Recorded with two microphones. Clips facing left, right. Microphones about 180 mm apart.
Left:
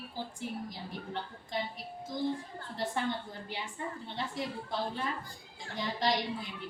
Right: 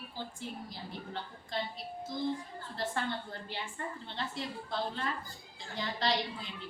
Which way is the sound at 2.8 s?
15° left (ahead or behind).